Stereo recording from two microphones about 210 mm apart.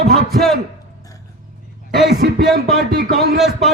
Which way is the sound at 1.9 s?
45° right (ahead or behind).